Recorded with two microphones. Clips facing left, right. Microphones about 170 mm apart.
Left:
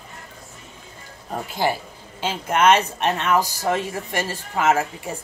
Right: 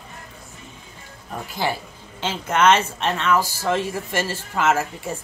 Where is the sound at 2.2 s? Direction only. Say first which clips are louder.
Even; 15° left (ahead or behind).